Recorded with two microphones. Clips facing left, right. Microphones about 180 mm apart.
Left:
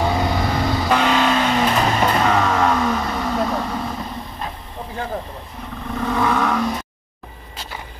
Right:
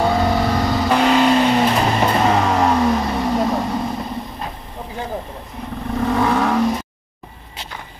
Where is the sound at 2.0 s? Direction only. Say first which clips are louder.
Right 1 dB; 25° right (ahead or behind).